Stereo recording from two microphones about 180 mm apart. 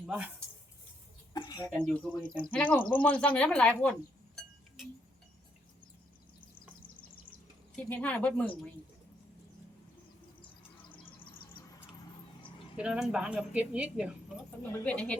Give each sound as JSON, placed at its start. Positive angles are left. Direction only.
{"t": 0.0, "sound": "speech", "side_deg": -5}
{"t": 1.3, "sound": "a sound", "side_deg": 20}
{"t": 2.1, "sound": "speech", "side_deg": -10}
{"t": 2.5, "sound": "speech", "side_deg": 10}
{"t": 7.8, "sound": "speech", "side_deg": 10}
{"t": 12.7, "sound": "a woman's voice", "side_deg": -5}
{"t": 14.6, "sound": "speech", "side_deg": 10}